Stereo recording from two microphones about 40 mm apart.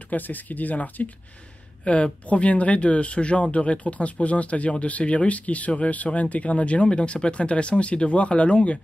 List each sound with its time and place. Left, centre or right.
0.1 s speech: left